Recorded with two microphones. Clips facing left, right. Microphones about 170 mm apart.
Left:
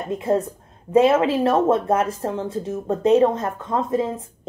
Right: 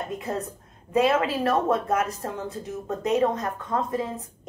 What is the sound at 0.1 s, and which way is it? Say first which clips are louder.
A woman's voice: left 9 dB; 30° left (ahead or behind).